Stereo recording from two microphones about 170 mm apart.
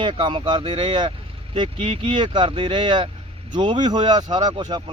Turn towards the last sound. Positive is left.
turn(degrees=-25)  # may be behind; listen again after turning